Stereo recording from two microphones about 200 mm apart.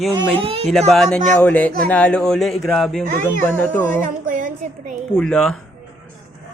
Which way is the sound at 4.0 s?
40° right (ahead or behind).